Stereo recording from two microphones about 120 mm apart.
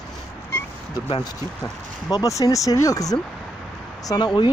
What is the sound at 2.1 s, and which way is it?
Speech, 25° left (ahead or behind).